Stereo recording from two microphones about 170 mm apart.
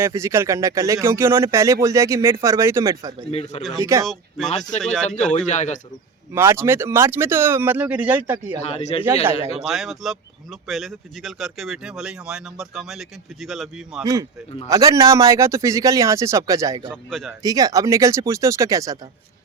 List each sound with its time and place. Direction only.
0.0 s speech: 15° right (ahead or behind)
3.3 s speech: 40° left (ahead or behind)
3.8 s speech: 15° right (ahead or behind)
4.0 s speech: centre (ahead or behind)
5.5 s speech: 45° left (ahead or behind)
6.3 s speech: 15° right (ahead or behind)
8.6 s speech: 40° left (ahead or behind)
9.7 s speech: centre (ahead or behind)
14.0 s a man's voice: 20° right (ahead or behind)
17.1 s speech: centre (ahead or behind)
17.4 s a man's voice: 20° right (ahead or behind)